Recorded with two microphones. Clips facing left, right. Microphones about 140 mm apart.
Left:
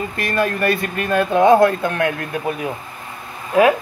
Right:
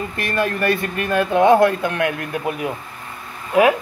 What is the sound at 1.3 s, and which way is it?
Speech, 20° right (ahead or behind).